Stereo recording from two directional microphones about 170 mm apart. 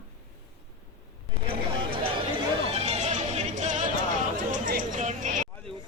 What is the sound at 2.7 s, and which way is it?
Music, 40° right (ahead or behind).